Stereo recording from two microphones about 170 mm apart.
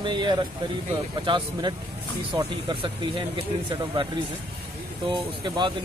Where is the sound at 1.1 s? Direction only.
25° right (ahead or behind).